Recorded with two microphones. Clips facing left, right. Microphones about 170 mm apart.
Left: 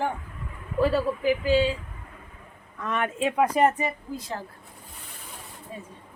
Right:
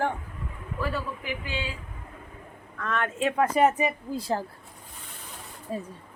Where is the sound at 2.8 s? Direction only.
15° left (ahead or behind).